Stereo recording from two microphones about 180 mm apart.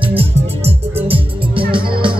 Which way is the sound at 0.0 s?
30° right (ahead or behind).